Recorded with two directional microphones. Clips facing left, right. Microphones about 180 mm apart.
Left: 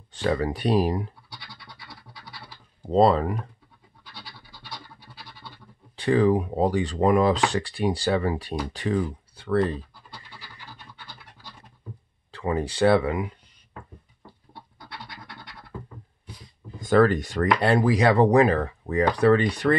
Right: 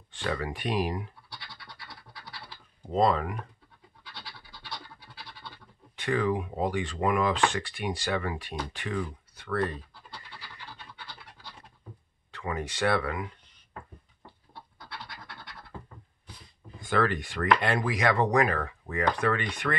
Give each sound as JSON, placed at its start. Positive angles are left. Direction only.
{"t": 0.1, "sound": "speech", "side_deg": 35}
{"t": 2.9, "sound": "speech", "side_deg": 35}
{"t": 5.9, "sound": "speech", "side_deg": 35}
{"t": 12.3, "sound": "speech", "side_deg": 30}
{"t": 14.5, "sound": "scratch", "side_deg": 15}
{"t": 16.8, "sound": "speech", "side_deg": 40}